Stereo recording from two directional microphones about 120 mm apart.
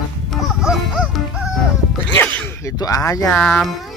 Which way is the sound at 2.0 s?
15° left (ahead or behind).